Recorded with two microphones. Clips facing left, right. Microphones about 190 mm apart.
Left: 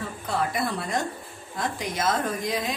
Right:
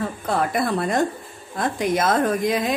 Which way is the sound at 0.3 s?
55° right (ahead or behind).